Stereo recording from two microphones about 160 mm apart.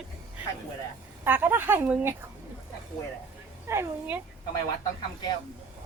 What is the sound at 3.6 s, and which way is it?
Speech, 15° right (ahead or behind).